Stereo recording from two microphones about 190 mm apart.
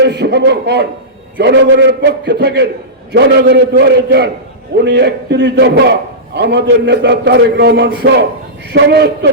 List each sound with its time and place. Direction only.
0.0 s a man's voice: 60° right (ahead or behind)